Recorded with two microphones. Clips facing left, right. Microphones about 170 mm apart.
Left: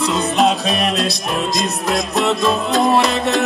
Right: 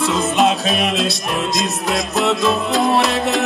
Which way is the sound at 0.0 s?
Centre (ahead or behind).